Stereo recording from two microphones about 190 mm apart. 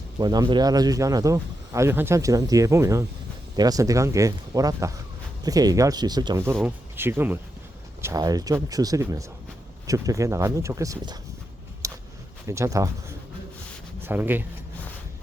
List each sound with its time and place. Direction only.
0.2 s speech: 20° right (ahead or behind)
11.8 s a sound: 20° right (ahead or behind)
12.5 s speech: 15° right (ahead or behind)